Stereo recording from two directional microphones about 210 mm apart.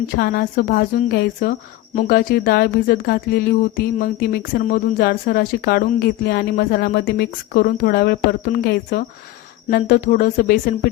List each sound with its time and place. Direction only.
0.2 s speech: 45° left (ahead or behind)